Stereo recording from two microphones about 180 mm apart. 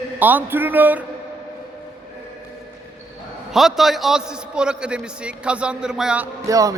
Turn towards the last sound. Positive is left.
turn(degrees=-20)  # may be behind; listen again after turning